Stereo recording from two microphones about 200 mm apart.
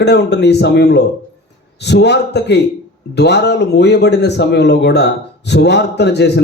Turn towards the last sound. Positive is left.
turn(degrees=60)  # may be behind; listen again after turning